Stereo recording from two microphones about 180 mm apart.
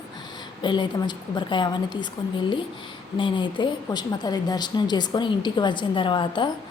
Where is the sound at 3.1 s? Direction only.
25° left (ahead or behind).